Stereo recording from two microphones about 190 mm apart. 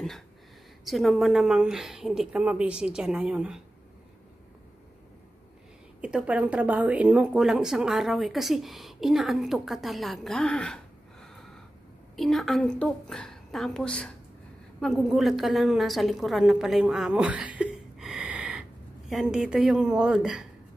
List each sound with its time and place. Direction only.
0.8 s a woman's voice: centre (ahead or behind)
5.9 s a woman's voice: 5° right (ahead or behind)